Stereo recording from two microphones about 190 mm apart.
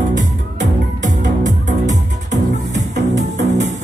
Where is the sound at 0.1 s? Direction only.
40° right (ahead or behind).